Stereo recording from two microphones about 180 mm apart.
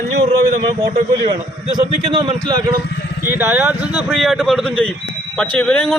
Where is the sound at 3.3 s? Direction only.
10° right (ahead or behind).